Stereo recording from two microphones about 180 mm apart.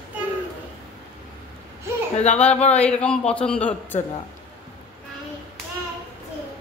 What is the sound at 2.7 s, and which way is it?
A man's voice, 5° left (ahead or behind).